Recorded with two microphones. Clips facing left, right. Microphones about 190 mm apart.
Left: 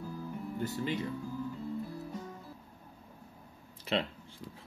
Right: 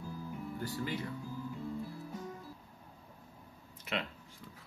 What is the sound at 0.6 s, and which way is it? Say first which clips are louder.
Speech: left 4 dB; 20° left (ahead or behind).